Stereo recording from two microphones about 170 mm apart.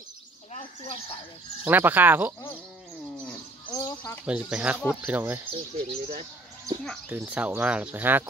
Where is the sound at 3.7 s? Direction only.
20° left (ahead or behind).